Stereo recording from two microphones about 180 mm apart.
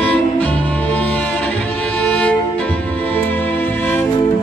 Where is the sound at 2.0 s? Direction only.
5° left (ahead or behind).